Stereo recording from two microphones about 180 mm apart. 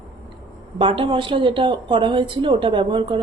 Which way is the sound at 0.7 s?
30° right (ahead or behind).